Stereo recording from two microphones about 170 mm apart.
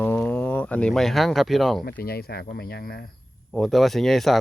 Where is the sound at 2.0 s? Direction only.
65° left (ahead or behind).